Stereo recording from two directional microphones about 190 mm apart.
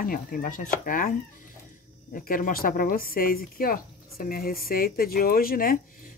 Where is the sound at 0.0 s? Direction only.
50° left (ahead or behind).